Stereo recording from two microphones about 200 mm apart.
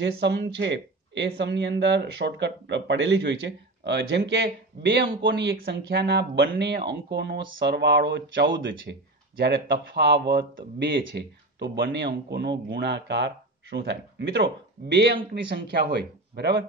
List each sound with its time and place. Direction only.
0.0 s a man's voice: 60° right (ahead or behind)
15.5 s speech: 55° right (ahead or behind)